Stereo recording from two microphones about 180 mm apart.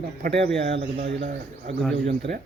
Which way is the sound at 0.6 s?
35° right (ahead or behind).